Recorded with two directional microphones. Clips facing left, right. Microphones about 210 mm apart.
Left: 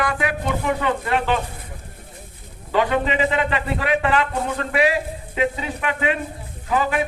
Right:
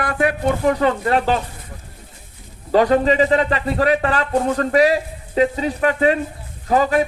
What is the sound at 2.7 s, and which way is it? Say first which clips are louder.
A man's voice: right 6 dB; 40° right (ahead or behind).